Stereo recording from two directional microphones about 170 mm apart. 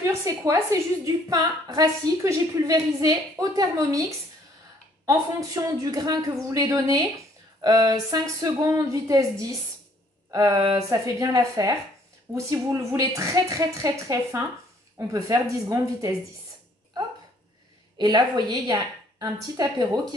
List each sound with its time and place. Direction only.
0.0 s a woman's voice: 15° right (ahead or behind)
5.0 s a woman's voice: 20° right (ahead or behind)
17.9 s a woman's voice: 25° right (ahead or behind)